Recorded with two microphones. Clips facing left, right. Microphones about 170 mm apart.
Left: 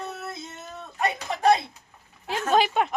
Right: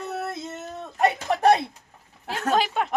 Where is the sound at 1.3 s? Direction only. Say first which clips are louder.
Right 6 dB; 60° right (ahead or behind).